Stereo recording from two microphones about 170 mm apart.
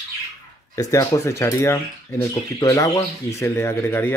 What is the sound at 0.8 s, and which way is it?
Speech, 20° left (ahead or behind).